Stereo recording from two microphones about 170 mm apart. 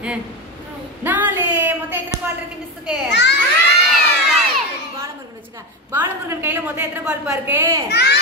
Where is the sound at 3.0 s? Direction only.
90° left.